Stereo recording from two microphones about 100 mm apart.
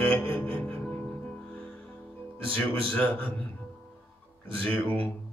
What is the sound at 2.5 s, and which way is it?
Mantra, 10° left (ahead or behind).